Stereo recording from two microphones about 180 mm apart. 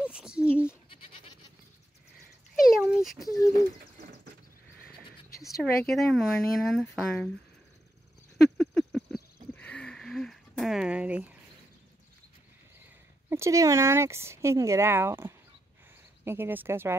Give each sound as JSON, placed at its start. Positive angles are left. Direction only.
{"t": 0.0, "sound": "bleat", "side_deg": -5}
{"t": 0.8, "sound": "goat", "side_deg": 30}
{"t": 2.6, "sound": "dog", "side_deg": -5}
{"t": 3.2, "sound": "speech", "side_deg": 15}
{"t": 3.5, "sound": "bird", "side_deg": -50}
{"t": 5.6, "sound": "speech", "side_deg": 0}
{"t": 8.5, "sound": "a sound", "side_deg": 5}
{"t": 13.3, "sound": "speech", "side_deg": -15}